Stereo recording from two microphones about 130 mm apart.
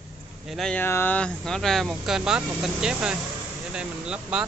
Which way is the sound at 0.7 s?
15° left (ahead or behind).